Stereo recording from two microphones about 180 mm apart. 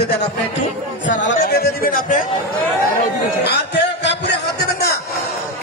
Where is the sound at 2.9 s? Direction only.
55° left (ahead or behind).